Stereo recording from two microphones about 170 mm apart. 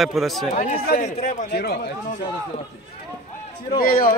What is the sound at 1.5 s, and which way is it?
Speech, 70° left (ahead or behind).